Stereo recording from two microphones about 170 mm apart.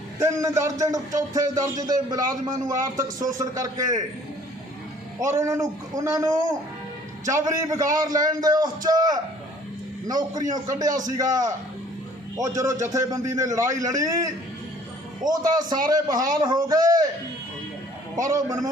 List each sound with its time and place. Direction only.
0.2 s a man's voice: 15° right (ahead or behind)
5.2 s a man's voice: 15° right (ahead or behind)
18.2 s a man's voice: 20° right (ahead or behind)